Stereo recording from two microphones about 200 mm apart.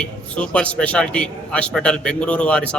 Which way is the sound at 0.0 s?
5° left (ahead or behind).